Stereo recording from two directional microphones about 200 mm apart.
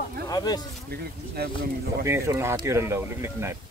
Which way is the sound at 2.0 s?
15° right (ahead or behind).